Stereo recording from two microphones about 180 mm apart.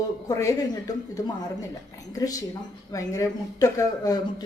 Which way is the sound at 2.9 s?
20° left (ahead or behind).